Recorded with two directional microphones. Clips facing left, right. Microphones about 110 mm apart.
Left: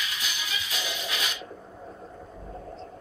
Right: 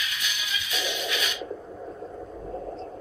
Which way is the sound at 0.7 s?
35° left (ahead or behind).